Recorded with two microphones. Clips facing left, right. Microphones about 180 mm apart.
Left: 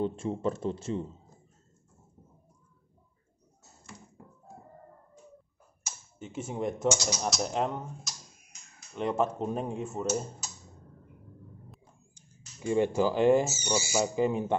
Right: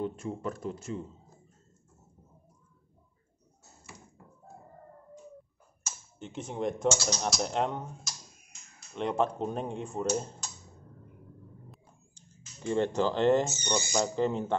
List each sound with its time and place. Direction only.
0.0 s a man's voice: 25° left (ahead or behind)
5.9 s speech: 5° left (ahead or behind)
12.1 s speech: 10° left (ahead or behind)